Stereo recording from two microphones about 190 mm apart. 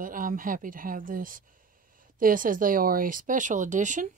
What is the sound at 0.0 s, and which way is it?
A woman's voice, 45° right (ahead or behind).